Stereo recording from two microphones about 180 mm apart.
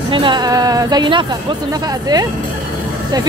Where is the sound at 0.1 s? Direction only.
25° right (ahead or behind).